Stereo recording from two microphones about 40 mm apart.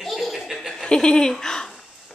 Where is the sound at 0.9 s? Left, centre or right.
Left.